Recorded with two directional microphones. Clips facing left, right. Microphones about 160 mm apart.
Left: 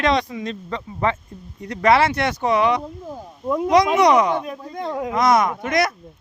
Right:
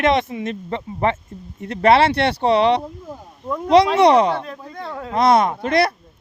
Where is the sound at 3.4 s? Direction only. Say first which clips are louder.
Left 4 dB; 10° left (ahead or behind).